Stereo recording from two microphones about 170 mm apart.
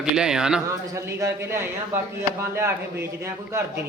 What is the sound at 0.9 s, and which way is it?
A man's voice, 15° right (ahead or behind).